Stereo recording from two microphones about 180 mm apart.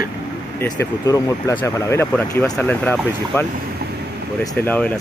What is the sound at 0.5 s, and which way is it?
Speech, 15° left (ahead or behind).